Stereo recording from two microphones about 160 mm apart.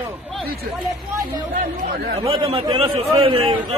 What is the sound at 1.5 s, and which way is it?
Chatter, 60° right (ahead or behind).